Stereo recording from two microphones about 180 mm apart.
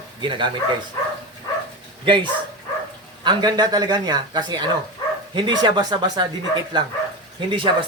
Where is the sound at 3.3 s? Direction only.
25° right (ahead or behind).